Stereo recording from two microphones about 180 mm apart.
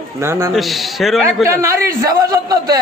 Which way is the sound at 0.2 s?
15° right (ahead or behind).